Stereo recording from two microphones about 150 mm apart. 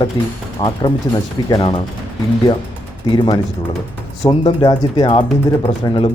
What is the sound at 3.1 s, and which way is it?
Speech, 30° left (ahead or behind).